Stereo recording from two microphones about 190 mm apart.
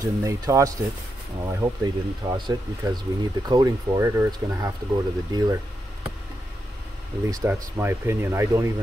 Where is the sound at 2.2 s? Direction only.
20° right (ahead or behind).